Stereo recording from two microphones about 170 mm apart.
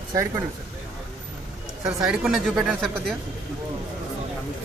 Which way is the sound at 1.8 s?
5° right (ahead or behind).